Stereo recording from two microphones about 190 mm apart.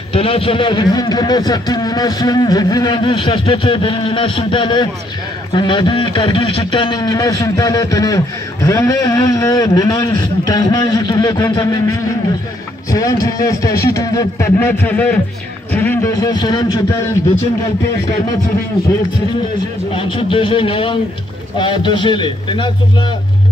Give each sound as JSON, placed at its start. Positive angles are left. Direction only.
{"t": 0.1, "sound": "a man's voice", "side_deg": 30}
{"t": 19.9, "sound": "speech", "side_deg": 30}